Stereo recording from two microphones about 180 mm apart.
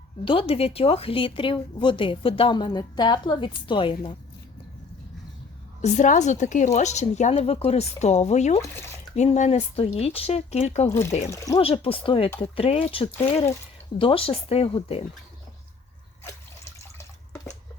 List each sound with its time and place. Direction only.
0.3 s a woman's voice: 30° left (ahead or behind)
5.8 s a woman's voice: 40° left (ahead or behind)
11.3 s a woman's voice: 20° left (ahead or behind)
11.6 s a woman's voice: 30° left (ahead or behind)
16.2 s water: 15° left (ahead or behind)